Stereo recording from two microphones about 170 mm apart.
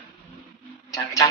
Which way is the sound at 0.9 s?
20° left (ahead or behind).